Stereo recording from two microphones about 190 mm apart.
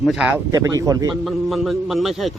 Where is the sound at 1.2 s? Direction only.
Centre (ahead or behind).